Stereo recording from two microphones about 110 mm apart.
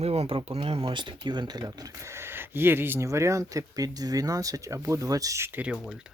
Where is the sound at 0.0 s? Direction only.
65° right (ahead or behind); by 5.8 s 15° right (ahead or behind).